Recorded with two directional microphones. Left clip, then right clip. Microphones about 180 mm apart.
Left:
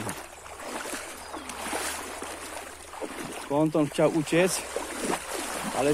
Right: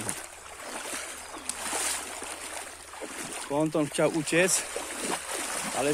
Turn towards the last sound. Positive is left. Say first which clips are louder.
# left 2 dB
turn(degrees=-20)  # may be behind; listen again after turning